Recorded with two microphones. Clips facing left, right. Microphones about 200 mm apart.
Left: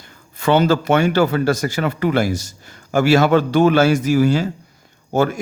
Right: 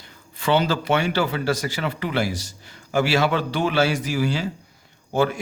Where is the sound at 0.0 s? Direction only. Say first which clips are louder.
Left 6 dB; 45° left (ahead or behind).